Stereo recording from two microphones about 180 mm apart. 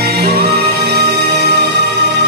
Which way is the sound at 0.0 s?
65° right (ahead or behind).